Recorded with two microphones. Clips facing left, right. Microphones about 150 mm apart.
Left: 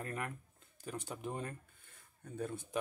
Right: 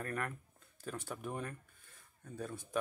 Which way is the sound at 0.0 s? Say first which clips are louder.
Right 2 dB; 20° left (ahead or behind).